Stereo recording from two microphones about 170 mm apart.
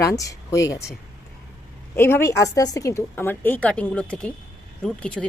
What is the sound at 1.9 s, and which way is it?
A woman's voice, 15° left (ahead or behind).